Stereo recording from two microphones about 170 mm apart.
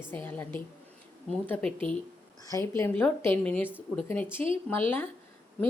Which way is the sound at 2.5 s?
15° left (ahead or behind).